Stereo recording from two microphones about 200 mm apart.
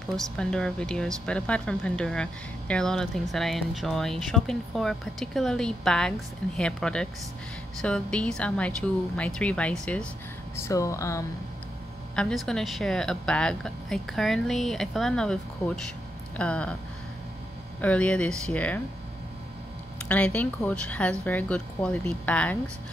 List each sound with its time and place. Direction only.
0.1 s speech: 5° left (ahead or behind)
12.2 s speech: 5° left (ahead or behind)
17.7 s speech: 5° left (ahead or behind)
20.1 s speech: 5° left (ahead or behind)